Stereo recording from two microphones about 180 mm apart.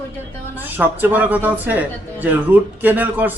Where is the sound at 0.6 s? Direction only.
10° right (ahead or behind).